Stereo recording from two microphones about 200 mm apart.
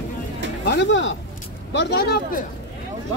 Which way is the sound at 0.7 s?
60° left (ahead or behind).